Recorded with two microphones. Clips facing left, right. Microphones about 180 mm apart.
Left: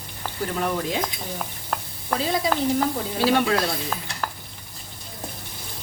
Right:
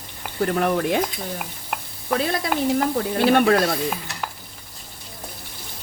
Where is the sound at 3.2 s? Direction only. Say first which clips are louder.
Right 4 dB; 55° right (ahead or behind).